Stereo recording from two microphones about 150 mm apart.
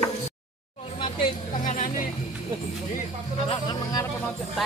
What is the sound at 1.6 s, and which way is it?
Music, 60° left (ahead or behind).